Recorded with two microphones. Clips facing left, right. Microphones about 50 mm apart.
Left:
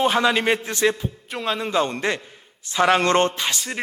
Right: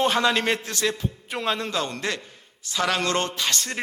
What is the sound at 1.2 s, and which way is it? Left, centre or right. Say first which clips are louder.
Speech: left 1 dB; centre.